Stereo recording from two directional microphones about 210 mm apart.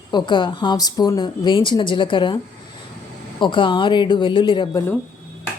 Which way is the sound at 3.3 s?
25° left (ahead or behind).